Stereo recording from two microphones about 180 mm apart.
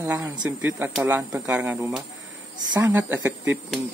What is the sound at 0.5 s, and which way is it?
Speech, 10° right (ahead or behind).